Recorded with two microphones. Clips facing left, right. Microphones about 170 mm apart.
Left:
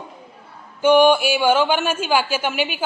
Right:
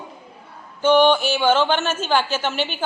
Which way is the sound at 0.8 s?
10° left (ahead or behind).